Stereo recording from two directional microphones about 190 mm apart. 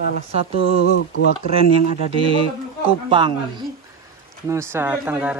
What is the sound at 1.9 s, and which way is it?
Speech, 30° right (ahead or behind).